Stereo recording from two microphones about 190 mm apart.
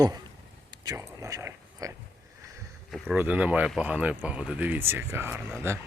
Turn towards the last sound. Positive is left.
turn(degrees=-15)  # may be behind; listen again after turning